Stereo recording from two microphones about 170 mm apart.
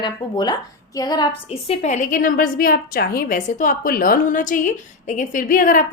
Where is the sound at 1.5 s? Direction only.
35° left (ahead or behind).